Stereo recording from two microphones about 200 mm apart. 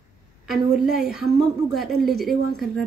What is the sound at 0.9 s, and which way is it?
Speech, centre (ahead or behind).